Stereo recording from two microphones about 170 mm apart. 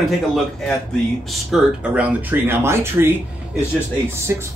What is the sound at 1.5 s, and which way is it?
Speech, 5° right (ahead or behind).